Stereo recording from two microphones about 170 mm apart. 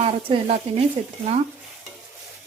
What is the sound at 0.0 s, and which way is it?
Speech, 40° right (ahead or behind).